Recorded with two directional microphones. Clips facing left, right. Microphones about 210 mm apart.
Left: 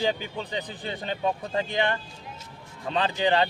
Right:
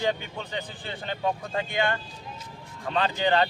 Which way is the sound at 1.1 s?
20° left (ahead or behind).